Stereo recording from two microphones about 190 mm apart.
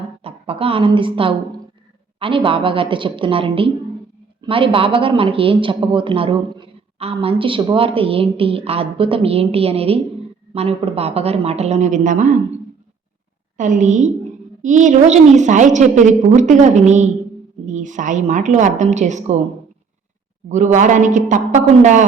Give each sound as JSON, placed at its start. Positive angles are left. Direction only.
{"t": 0.2, "sound": "a woman's voice", "side_deg": -30}
{"t": 13.6, "sound": "a woman's voice", "side_deg": -40}
{"t": 20.5, "sound": "a woman's voice", "side_deg": -40}